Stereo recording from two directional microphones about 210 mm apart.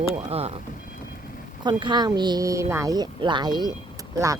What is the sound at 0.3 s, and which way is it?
Speech, 30° right (ahead or behind).